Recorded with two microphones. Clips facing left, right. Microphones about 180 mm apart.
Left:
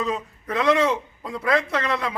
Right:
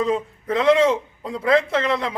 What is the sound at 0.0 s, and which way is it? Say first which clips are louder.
A man's voice: right 5 dB; 25° right (ahead or behind).